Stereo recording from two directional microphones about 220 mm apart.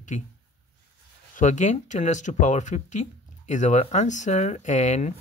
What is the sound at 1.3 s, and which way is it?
Speech, 35° left (ahead or behind).